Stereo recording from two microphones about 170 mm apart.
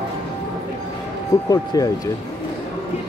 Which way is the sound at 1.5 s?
20° left (ahead or behind).